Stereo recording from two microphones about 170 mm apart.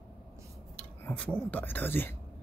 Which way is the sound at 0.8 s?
5° left (ahead or behind).